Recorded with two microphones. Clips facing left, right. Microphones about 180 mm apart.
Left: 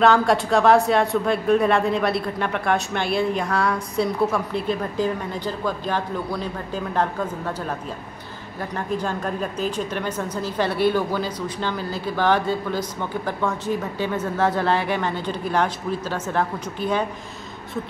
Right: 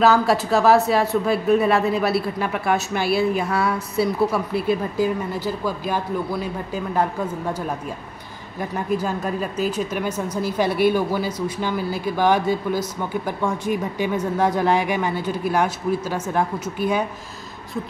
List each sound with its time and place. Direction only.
0.0 s a man's voice: 5° right (ahead or behind)
8.5 s speech: 10° right (ahead or behind)